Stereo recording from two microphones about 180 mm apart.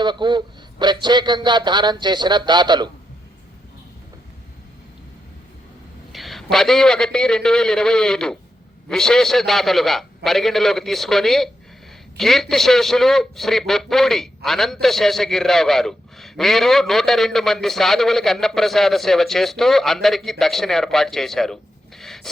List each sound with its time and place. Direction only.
0.0 s a man's voice: 25° right (ahead or behind)
6.1 s a man's voice: centre (ahead or behind)